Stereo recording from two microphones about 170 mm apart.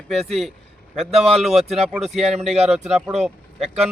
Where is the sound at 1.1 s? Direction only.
35° right (ahead or behind).